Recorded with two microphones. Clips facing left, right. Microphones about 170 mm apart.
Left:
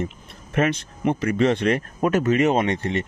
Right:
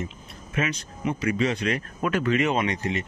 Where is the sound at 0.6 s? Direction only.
55° left (ahead or behind).